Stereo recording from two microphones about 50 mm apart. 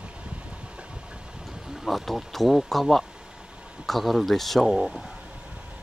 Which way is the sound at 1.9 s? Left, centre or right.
Centre.